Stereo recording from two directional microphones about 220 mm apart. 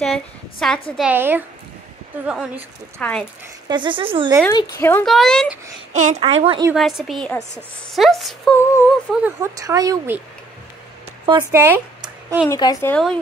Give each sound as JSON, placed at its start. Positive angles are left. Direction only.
{"t": 0.0, "sound": "a woman's voice", "side_deg": 0}
{"t": 3.6, "sound": "a woman's voice", "side_deg": -20}
{"t": 4.5, "sound": "a woman's voice", "side_deg": 15}
{"t": 5.9, "sound": "a woman's voice", "side_deg": -30}
{"t": 6.7, "sound": "a woman's voice", "side_deg": 0}
{"t": 9.1, "sound": "speech", "side_deg": -10}
{"t": 11.2, "sound": "speech", "side_deg": -15}
{"t": 12.4, "sound": "speech", "side_deg": 15}
{"t": 12.9, "sound": "a woman's voice", "side_deg": 5}